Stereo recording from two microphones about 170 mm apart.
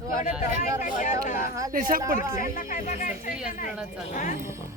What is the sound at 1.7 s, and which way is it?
Speech, 55° right (ahead or behind).